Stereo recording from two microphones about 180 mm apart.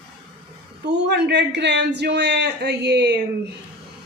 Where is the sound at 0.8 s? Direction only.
70° right (ahead or behind).